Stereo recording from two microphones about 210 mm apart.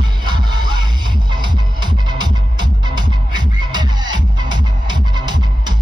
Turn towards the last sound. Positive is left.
turn(degrees=-20)  # may be behind; listen again after turning